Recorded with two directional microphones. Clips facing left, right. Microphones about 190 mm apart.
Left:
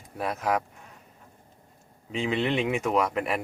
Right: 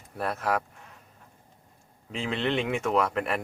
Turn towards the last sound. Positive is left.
turn(degrees=5)  # may be behind; listen again after turning